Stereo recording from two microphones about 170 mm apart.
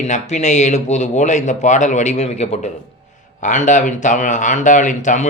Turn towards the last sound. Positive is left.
turn(degrees=45)  # may be behind; listen again after turning